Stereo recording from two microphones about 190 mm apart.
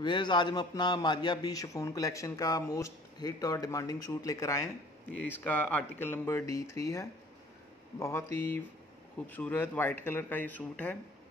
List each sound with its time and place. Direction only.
0.0 s a man's voice: 25° left (ahead or behind)